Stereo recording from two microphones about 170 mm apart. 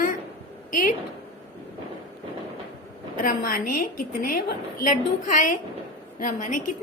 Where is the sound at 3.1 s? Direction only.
55° left (ahead or behind).